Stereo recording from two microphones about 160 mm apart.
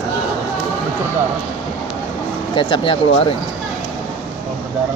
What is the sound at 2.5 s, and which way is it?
Speech, 30° left (ahead or behind).